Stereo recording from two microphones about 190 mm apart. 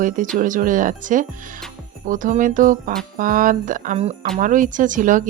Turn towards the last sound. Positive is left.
turn(degrees=-45)  # may be behind; listen again after turning